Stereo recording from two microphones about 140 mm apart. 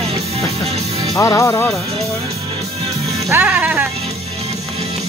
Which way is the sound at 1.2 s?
20° left (ahead or behind).